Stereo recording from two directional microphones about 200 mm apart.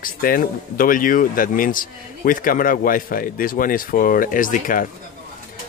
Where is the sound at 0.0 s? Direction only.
45° left (ahead or behind).